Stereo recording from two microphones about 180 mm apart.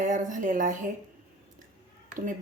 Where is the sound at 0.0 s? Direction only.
45° right (ahead or behind).